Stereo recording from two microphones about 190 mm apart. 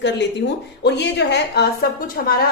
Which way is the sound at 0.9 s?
65° left (ahead or behind).